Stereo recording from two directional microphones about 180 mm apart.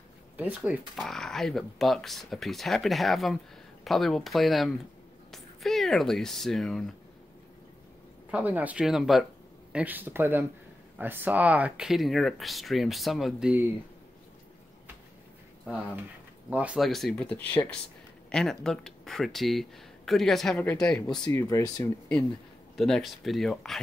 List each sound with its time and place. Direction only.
0.4 s speech: 5° right (ahead or behind)
8.3 s speech: 10° right (ahead or behind)
16.4 s speech: 5° right (ahead or behind)
21.2 s speech: 20° left (ahead or behind)
22.8 s speech: centre (ahead or behind)